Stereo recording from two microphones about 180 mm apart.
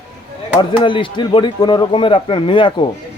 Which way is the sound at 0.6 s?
25° left (ahead or behind).